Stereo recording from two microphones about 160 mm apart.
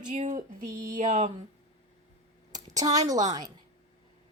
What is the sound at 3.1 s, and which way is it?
Speech, 25° right (ahead or behind).